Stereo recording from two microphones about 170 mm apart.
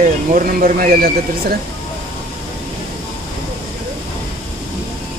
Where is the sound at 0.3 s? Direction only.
55° right (ahead or behind).